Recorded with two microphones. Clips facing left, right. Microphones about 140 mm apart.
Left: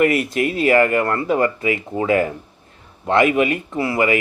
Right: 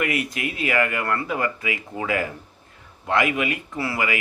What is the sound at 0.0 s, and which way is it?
Speech, 30° left (ahead or behind).